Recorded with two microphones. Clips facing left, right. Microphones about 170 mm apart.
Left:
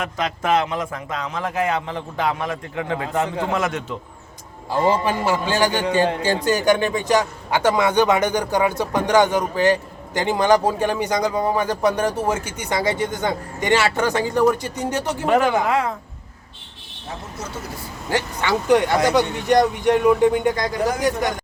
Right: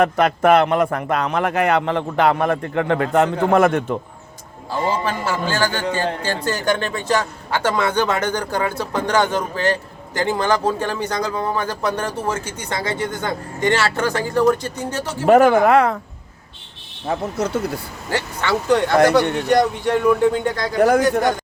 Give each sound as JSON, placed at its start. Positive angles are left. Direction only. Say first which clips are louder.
{"t": 0.0, "sound": "speech", "louder": "right 9 dB", "side_deg": -60}
{"t": 5.0, "sound": "a man's voice", "louder": "left 2 dB", "side_deg": 15}
{"t": 15.3, "sound": "speech", "louder": "right 7 dB", "side_deg": -50}
{"t": 17.1, "sound": "speech", "louder": "right 11 dB", "side_deg": -65}
{"t": 18.1, "sound": "a man's voice", "louder": "even", "side_deg": 15}
{"t": 20.7, "sound": "speech", "louder": "right 7 dB", "side_deg": -60}